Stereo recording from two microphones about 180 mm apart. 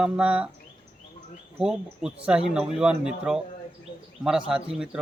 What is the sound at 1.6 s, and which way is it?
Speech, 5° right (ahead or behind).